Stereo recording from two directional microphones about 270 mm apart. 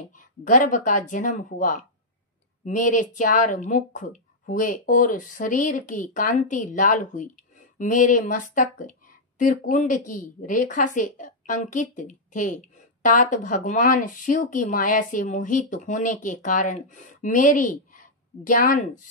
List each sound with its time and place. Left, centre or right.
0.1 s speech: left